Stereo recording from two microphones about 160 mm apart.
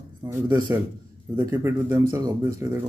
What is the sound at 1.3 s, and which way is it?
Speech, 15° right (ahead or behind).